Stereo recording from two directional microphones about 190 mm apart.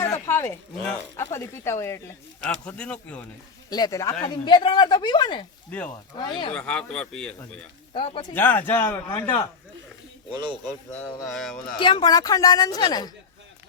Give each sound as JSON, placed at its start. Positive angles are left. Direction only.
{"t": 0.0, "sound": "speech", "side_deg": 15}
{"t": 3.7, "sound": "a woman's voice", "side_deg": 20}
{"t": 5.7, "sound": "speech", "side_deg": 10}
{"t": 6.1, "sound": "a woman's voice", "side_deg": 25}
{"t": 6.5, "sound": "speech", "side_deg": 5}
{"t": 7.9, "sound": "a woman's voice", "side_deg": 25}
{"t": 8.3, "sound": "speech", "side_deg": 10}
{"t": 10.3, "sound": "speech", "side_deg": -25}
{"t": 11.3, "sound": "speech", "side_deg": 0}
{"t": 11.8, "sound": "a woman's voice", "side_deg": 25}